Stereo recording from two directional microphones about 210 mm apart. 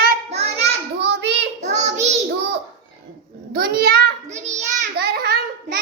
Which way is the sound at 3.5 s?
45° right (ahead or behind).